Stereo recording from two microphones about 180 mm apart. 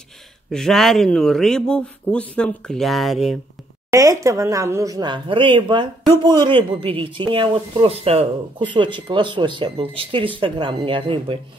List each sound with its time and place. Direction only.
0.5 s speech: centre (ahead or behind)
3.9 s speech: 15° right (ahead or behind)